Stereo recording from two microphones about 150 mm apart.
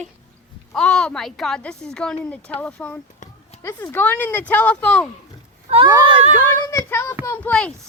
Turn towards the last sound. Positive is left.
turn(degrees=10)  # may be behind; listen again after turning